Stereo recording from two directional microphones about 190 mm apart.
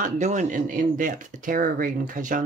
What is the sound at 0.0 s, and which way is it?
Speech, 40° right (ahead or behind).